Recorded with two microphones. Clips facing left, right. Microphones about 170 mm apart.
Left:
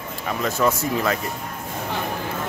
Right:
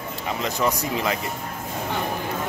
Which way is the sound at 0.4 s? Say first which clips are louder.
Left 3 dB; 15° right (ahead or behind).